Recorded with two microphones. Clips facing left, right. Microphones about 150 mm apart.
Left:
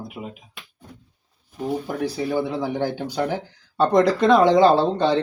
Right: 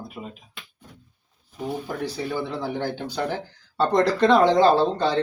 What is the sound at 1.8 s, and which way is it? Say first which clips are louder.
Speech: left 4 dB; 10° left (ahead or behind).